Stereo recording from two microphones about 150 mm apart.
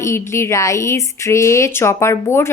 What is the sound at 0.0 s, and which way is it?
A woman's voice, 15° left (ahead or behind).